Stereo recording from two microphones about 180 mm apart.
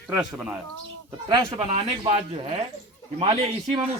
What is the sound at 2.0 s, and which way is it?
Speech, 30° right (ahead or behind).